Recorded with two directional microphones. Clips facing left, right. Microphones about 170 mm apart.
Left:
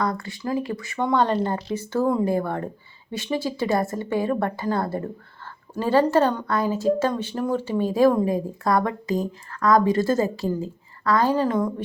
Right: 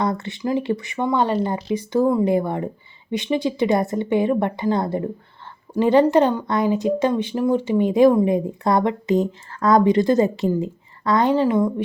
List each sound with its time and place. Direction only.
0.0 s speech: 25° right (ahead or behind)